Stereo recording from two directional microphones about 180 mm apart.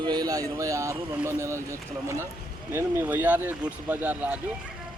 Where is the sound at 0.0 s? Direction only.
20° right (ahead or behind).